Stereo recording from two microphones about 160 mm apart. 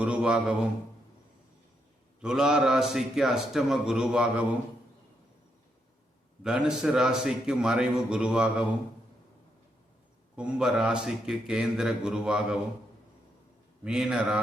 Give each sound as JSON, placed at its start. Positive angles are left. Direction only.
{"t": 0.0, "sound": "a man's voice", "side_deg": -5}
{"t": 2.2, "sound": "a man's voice", "side_deg": -5}
{"t": 6.4, "sound": "a man's voice", "side_deg": -5}
{"t": 10.3, "sound": "a man's voice", "side_deg": -5}
{"t": 13.8, "sound": "a man's voice", "side_deg": -5}